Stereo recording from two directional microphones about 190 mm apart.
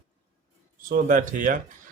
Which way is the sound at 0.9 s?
45° right (ahead or behind).